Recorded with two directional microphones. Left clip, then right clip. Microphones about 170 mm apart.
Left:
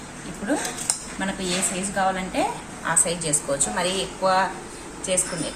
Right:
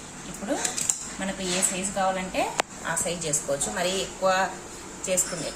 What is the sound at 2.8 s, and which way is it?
A woman's voice, 15° right (ahead or behind).